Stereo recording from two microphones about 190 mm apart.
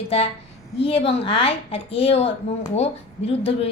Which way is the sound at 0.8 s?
30° left (ahead or behind).